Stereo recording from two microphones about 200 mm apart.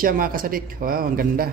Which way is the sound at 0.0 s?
45° right (ahead or behind).